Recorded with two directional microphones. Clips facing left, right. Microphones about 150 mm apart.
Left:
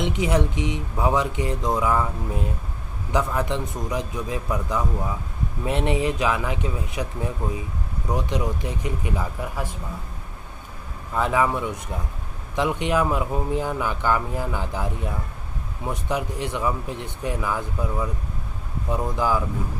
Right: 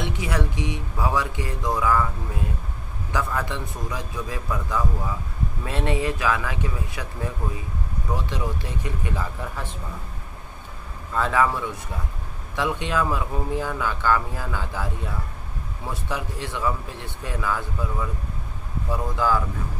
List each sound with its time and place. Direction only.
0.0 s speech: 20° left (ahead or behind)
11.1 s speech: 15° left (ahead or behind)